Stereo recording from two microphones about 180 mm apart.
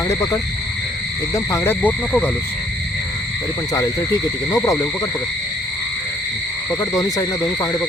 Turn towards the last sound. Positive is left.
turn(degrees=20)  # may be behind; listen again after turning